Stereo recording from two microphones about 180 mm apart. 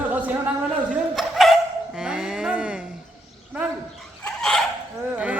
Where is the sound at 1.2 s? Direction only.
Centre (ahead or behind).